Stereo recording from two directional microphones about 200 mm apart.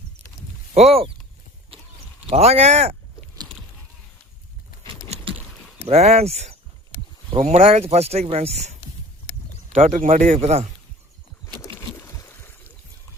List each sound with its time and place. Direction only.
0.7 s speech: 30° right (ahead or behind)
2.3 s speech: 30° right (ahead or behind)
5.0 s a sound: 30° right (ahead or behind)
5.9 s speech: 35° right (ahead or behind)
9.7 s speech: 35° right (ahead or behind)
12.1 s a sound: 15° left (ahead or behind)